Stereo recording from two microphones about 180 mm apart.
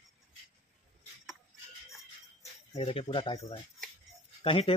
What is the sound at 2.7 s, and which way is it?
Speech, 30° left (ahead or behind).